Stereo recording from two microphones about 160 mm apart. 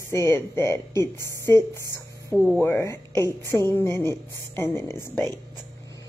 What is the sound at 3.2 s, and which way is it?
Speech, 20° right (ahead or behind).